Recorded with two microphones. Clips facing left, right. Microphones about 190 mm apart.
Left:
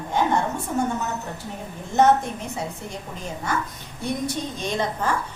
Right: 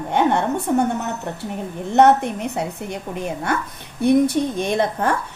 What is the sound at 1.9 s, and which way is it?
A woman's voice, 65° right (ahead or behind).